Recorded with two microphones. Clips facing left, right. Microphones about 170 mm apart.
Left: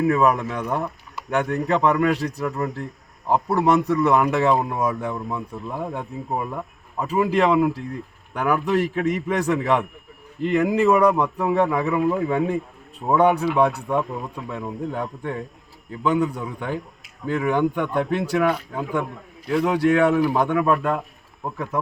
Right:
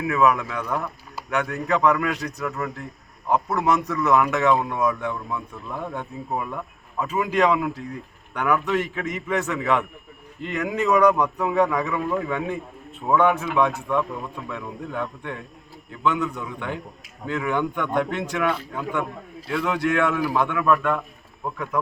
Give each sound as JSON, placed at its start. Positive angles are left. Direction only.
{"t": 0.1, "sound": "speech", "side_deg": 35}
{"t": 13.1, "sound": "speech", "side_deg": 35}